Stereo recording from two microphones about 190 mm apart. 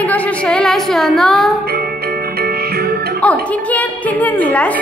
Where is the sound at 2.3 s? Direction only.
55° right (ahead or behind).